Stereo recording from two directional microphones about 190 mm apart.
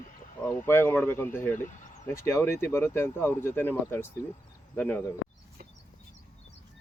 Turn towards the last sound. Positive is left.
turn(degrees=10)  # may be behind; listen again after turning